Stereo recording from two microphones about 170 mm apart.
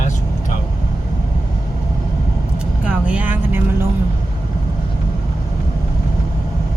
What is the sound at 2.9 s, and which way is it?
Vehicle, 5° right (ahead or behind).